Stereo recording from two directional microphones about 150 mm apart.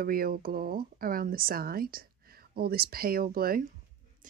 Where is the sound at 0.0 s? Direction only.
80° right.